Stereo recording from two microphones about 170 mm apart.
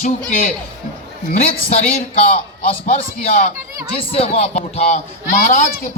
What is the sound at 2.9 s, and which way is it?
A man's voice, 40° left (ahead or behind).